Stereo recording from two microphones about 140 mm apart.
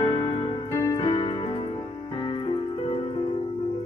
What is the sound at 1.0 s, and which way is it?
Keyboard, 35° left (ahead or behind).